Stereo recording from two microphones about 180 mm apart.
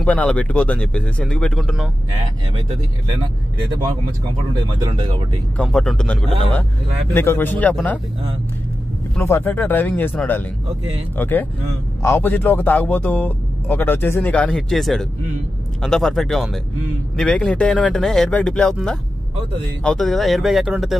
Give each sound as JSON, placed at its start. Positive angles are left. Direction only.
{"t": 0.0, "sound": "a man's voice", "side_deg": 5}
{"t": 4.8, "sound": "speech", "side_deg": -30}
{"t": 5.6, "sound": "a man's voice", "side_deg": 5}
{"t": 9.2, "sound": "a man's voice", "side_deg": 10}